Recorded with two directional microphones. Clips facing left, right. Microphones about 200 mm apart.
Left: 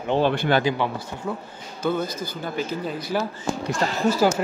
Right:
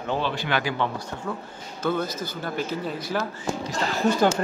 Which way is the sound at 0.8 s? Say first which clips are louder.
Left 1 dB; 10° left (ahead or behind).